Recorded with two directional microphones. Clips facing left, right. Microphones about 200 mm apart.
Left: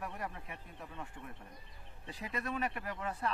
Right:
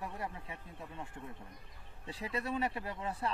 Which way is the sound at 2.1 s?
30° right (ahead or behind).